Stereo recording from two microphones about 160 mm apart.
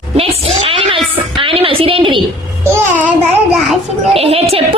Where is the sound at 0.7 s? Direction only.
35° right (ahead or behind).